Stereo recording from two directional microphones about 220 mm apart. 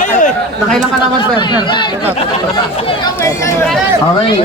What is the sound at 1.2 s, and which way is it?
Speech, 20° left (ahead or behind).